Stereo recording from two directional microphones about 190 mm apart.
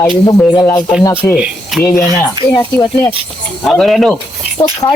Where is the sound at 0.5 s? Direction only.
15° left (ahead or behind).